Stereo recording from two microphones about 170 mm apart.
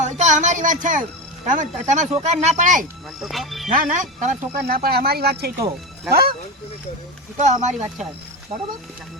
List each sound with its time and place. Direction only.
0.0 s a sound: 45° right (ahead or behind)
1.5 s speech: 45° right (ahead or behind)
3.2 s speech: centre (ahead or behind)
3.7 s speech: 50° right (ahead or behind)
7.3 s speech: 45° right (ahead or behind)